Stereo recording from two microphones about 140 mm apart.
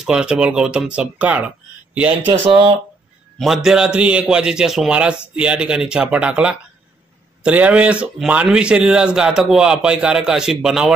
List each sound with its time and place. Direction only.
0.0 s speech: 5° right (ahead or behind)
2.4 s speech: 35° right (ahead or behind)
3.3 s speech: centre (ahead or behind)